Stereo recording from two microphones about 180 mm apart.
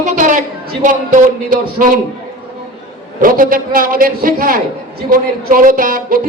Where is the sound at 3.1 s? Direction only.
50° right (ahead or behind).